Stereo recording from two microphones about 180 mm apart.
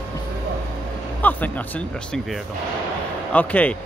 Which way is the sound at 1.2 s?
10° left (ahead or behind).